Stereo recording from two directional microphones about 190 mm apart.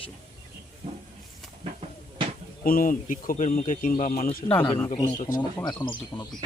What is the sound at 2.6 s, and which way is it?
Speech, 50° left (ahead or behind).